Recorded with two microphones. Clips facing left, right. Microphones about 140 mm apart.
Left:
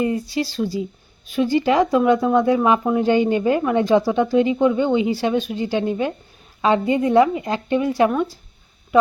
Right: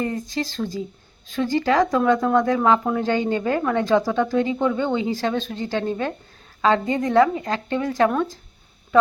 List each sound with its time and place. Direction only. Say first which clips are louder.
0.0 s speech: left 4 dB; 10° left (ahead or behind)